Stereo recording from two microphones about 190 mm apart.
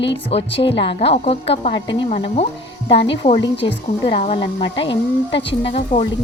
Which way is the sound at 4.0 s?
30° left (ahead or behind).